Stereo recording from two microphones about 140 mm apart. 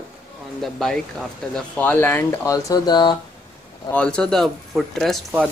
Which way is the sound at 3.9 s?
10° left (ahead or behind).